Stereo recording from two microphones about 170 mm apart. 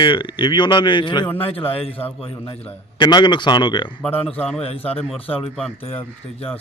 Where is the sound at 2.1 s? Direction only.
35° left (ahead or behind).